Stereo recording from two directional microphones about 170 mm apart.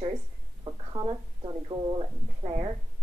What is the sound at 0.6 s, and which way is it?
Speech, 25° right (ahead or behind).